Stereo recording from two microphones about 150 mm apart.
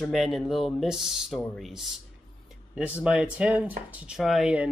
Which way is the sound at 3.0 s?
5° right (ahead or behind).